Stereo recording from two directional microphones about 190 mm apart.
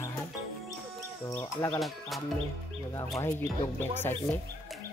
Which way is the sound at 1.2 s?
15° left (ahead or behind).